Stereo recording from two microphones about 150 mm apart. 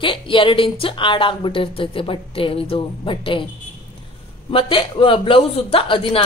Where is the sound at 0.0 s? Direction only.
35° left (ahead or behind).